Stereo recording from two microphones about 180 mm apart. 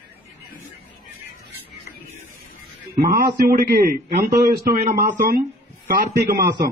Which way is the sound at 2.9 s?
55° right (ahead or behind).